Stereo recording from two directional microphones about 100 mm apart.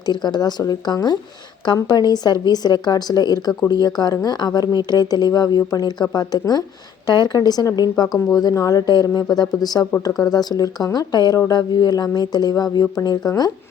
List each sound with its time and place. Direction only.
0.0 s speech: 45° left (ahead or behind)